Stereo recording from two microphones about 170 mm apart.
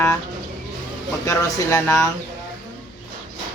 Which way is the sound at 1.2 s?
20° left (ahead or behind).